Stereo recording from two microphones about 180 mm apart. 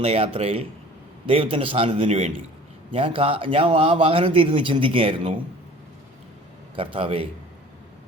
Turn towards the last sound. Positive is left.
turn(degrees=-30)  # may be behind; listen again after turning